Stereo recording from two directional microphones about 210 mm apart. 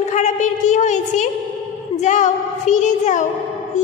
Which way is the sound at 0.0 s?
35° left (ahead or behind).